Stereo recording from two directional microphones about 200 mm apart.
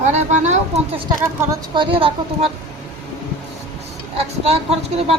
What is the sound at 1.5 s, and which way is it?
Speech, 25° right (ahead or behind).